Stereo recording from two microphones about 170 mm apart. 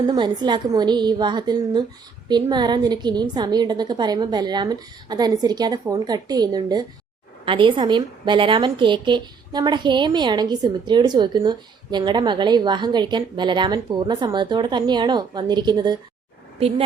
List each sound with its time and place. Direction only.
0.0 s a woman's voice: 25° right (ahead or behind)
16.6 s speech: 35° right (ahead or behind)